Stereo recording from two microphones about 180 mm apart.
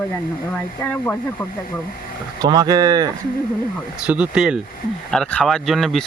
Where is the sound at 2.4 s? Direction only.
20° right (ahead or behind).